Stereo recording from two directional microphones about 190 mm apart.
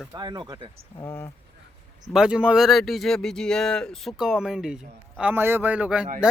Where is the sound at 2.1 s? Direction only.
5° right (ahead or behind).